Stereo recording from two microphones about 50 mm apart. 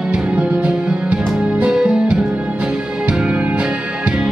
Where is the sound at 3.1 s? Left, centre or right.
Centre.